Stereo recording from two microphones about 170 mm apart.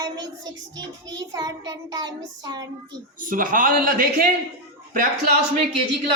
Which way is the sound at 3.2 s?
55° right (ahead or behind).